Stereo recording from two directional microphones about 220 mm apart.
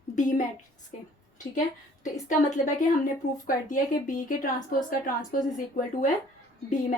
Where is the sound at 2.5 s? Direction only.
35° left (ahead or behind).